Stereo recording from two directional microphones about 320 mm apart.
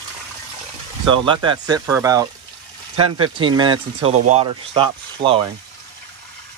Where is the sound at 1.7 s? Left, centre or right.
Centre.